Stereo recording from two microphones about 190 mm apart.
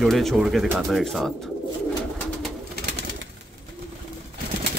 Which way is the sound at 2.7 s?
60° right (ahead or behind).